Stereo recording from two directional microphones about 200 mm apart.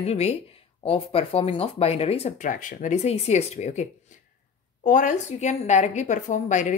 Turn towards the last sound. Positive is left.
turn(degrees=35)  # may be behind; listen again after turning